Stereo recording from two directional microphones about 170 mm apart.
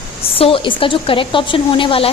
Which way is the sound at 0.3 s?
30° left (ahead or behind).